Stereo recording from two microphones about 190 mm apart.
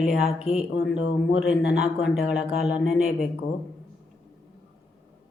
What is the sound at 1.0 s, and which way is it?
Speech, 75° left (ahead or behind).